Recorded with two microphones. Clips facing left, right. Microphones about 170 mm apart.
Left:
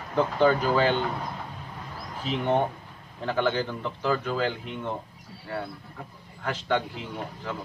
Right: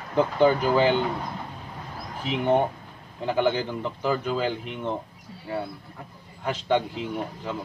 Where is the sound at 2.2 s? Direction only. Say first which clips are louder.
Right 2 dB; 15° right (ahead or behind).